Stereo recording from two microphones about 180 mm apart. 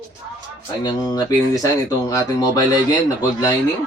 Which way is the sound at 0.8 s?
20° left (ahead or behind).